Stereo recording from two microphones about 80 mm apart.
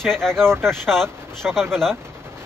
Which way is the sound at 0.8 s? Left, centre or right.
Centre.